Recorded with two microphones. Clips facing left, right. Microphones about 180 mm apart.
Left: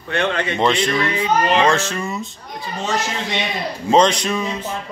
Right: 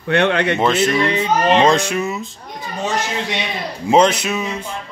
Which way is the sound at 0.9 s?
25° right (ahead or behind).